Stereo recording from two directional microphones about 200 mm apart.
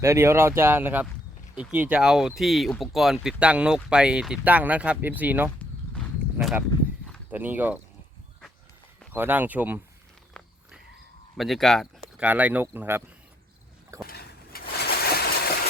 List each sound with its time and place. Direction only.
0.0 s speech: 15° right (ahead or behind)
9.1 s speech: 10° right (ahead or behind)
11.3 s speech: centre (ahead or behind)
14.1 s a sound: 50° left (ahead or behind)